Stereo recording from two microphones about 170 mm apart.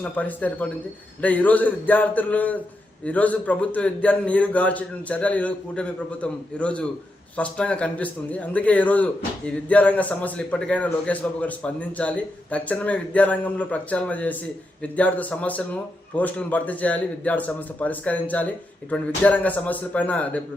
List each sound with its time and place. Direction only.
0.0 s a man's voice: 10° left (ahead or behind)